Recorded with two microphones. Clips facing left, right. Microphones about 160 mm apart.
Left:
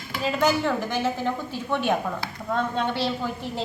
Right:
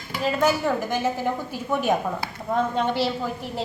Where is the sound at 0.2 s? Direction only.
5° right (ahead or behind).